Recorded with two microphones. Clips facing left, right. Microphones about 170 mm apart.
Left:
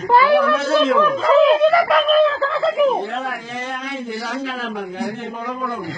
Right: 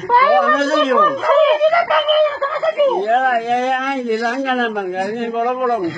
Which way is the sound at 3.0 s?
60° right (ahead or behind).